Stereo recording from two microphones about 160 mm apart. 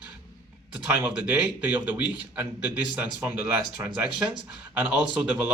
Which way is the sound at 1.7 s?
10° right (ahead or behind).